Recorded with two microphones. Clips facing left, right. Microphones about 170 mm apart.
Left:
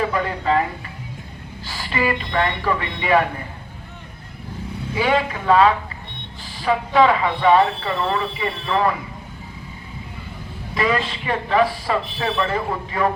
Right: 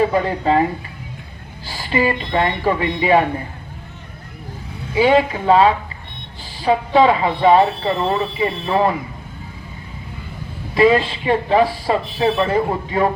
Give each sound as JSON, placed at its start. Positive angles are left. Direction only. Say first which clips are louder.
{"t": 0.0, "sound": "speech", "louder": "right 5 dB", "side_deg": -30}
{"t": 1.7, "sound": "speech", "louder": "right 4 dB", "side_deg": -30}
{"t": 4.9, "sound": "speech", "louder": "right 6 dB", "side_deg": -30}
{"t": 10.8, "sound": "speech", "louder": "right 8 dB", "side_deg": -30}